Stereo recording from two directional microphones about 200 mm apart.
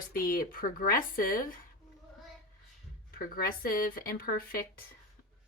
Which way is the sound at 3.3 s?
45° left (ahead or behind).